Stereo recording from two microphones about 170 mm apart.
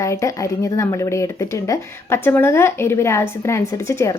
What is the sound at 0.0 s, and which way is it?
Speech, 15° left (ahead or behind).